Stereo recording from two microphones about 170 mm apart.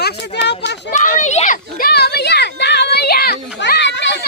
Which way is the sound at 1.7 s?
65° left (ahead or behind).